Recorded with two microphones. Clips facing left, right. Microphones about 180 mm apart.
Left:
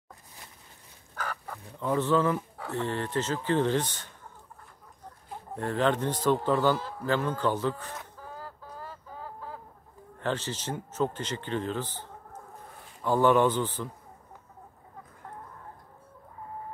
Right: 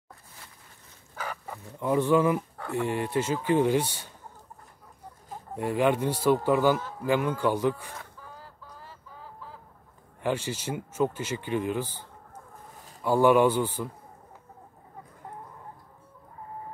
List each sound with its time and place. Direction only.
1.1 s dog: 10° right (ahead or behind)
2.7 s speech: 10° right (ahead or behind)
5.6 s speech: 10° right (ahead or behind)
8.4 s fowl: 45° left (ahead or behind)
10.2 s speech: 10° right (ahead or behind)
13.0 s speech: 10° right (ahead or behind)